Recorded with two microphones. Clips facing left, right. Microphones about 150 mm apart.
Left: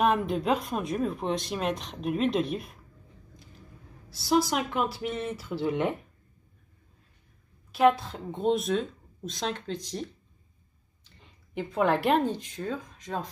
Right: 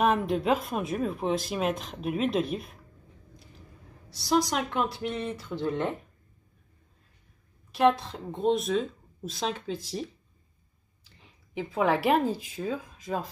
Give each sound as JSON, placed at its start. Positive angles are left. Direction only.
{"t": 0.0, "sound": "speech", "side_deg": 0}
{"t": 4.1, "sound": "speech", "side_deg": 0}
{"t": 7.7, "sound": "speech", "side_deg": 0}